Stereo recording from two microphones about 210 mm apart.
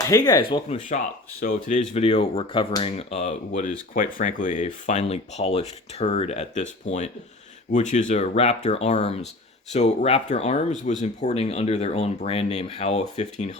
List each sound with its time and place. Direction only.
0.0 s speech: 15° left (ahead or behind)
0.7 s speech: 35° left (ahead or behind)